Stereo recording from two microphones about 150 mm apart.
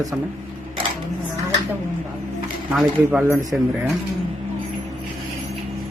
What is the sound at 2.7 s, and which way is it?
Speech, 10° right (ahead or behind).